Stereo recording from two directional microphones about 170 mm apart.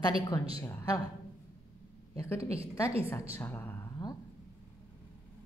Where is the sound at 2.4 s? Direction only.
35° right (ahead or behind).